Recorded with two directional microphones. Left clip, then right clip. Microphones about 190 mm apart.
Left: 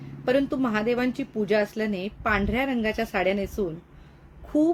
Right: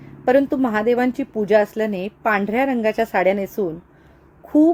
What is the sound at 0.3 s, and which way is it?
A woman's voice, 20° right (ahead or behind).